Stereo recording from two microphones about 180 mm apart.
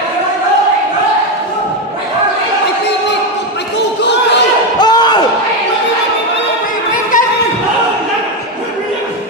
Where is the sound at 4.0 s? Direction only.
75° left (ahead or behind).